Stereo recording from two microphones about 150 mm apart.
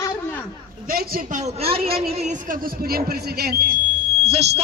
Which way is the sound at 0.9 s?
70° right (ahead or behind).